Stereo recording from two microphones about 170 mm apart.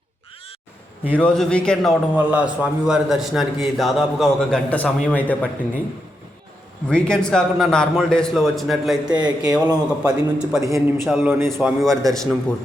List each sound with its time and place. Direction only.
1.1 s a man's voice: 5° left (ahead or behind)
2.1 s a man's voice: 10° right (ahead or behind); by 5.8 s 10° left (ahead or behind)
6.8 s a man's voice: 5° left (ahead or behind)
9.0 s speech: 25° right (ahead or behind)
10.0 s a man's voice: 5° right (ahead or behind)
10.6 s a man's voice: 20° right (ahead or behind)
11.0 s a man's voice: 5° right (ahead or behind)
11.8 s a man's voice: centre (ahead or behind)